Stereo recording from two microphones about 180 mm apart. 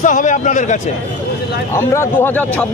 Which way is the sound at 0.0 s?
45° left (ahead or behind).